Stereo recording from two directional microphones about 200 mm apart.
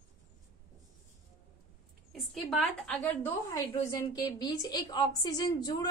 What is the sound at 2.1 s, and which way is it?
A woman's voice, centre (ahead or behind).